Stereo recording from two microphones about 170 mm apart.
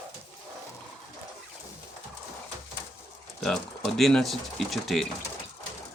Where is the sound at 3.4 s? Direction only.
Centre (ahead or behind).